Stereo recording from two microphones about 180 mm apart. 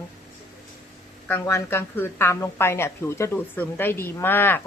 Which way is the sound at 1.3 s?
15° left (ahead or behind).